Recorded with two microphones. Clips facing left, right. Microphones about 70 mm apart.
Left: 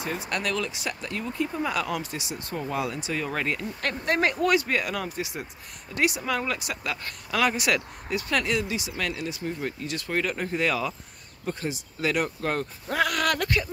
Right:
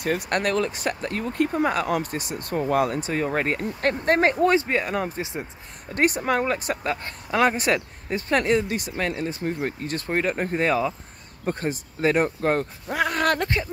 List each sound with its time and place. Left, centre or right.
0.0 s speech: right
5.9 s speech: right
11.4 s speech: right
12.8 s speech: centre
13.1 s speech: right